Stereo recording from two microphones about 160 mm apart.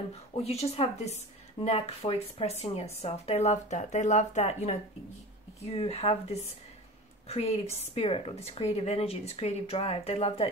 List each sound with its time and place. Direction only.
0.1 s a woman's voice: 40° left (ahead or behind)